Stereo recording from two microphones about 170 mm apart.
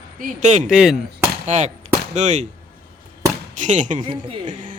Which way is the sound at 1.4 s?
45° right (ahead or behind).